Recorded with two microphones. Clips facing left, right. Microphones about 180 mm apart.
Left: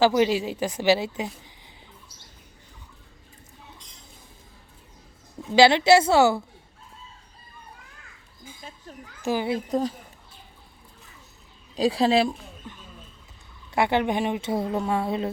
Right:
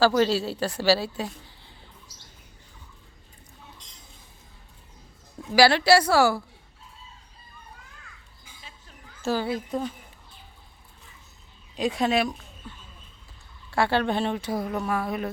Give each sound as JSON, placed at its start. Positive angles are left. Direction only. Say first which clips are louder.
{"t": 0.0, "sound": "a woman's voice", "louder": "left 1 dB", "side_deg": 15}
{"t": 5.4, "sound": "speech", "louder": "left 2 dB", "side_deg": 20}
{"t": 9.2, "sound": "a woman's voice", "louder": "left 1 dB", "side_deg": 15}
{"t": 9.6, "sound": "a woman's voice", "louder": "left 4 dB", "side_deg": 40}
{"t": 11.8, "sound": "a woman's voice", "louder": "left 3 dB", "side_deg": 30}
{"t": 13.7, "sound": "speech", "louder": "left 1 dB", "side_deg": 20}